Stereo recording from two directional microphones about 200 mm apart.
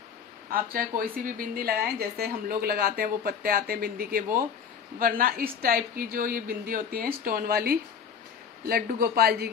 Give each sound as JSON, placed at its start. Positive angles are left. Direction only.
{"t": 0.5, "sound": "a woman's voice", "side_deg": -45}